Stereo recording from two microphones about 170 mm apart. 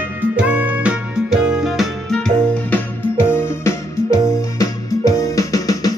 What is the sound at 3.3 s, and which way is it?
Music, 15° left (ahead or behind).